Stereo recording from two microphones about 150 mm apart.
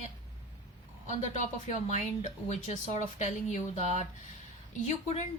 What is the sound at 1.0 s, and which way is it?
Speech, 50° left (ahead or behind).